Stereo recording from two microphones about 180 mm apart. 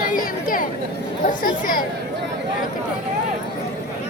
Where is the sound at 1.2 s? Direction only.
50° left (ahead or behind).